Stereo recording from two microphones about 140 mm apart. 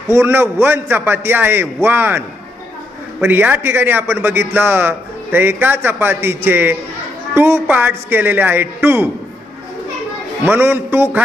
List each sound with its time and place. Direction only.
0.1 s a man's voice: 20° right (ahead or behind)
10.4 s a man's voice: 15° right (ahead or behind)